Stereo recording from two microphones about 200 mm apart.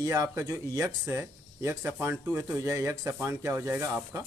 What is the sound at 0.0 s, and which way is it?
Speech, 15° right (ahead or behind).